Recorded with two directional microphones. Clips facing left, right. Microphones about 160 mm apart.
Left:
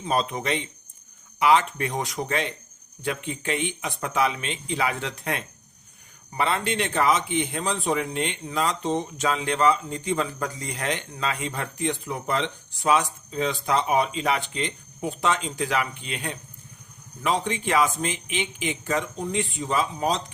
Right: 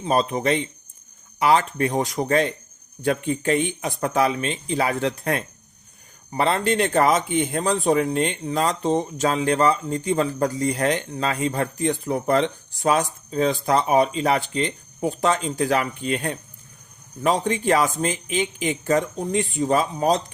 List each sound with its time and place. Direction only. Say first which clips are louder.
0.0 s a man's voice: right 5 dB; 35° right (ahead or behind)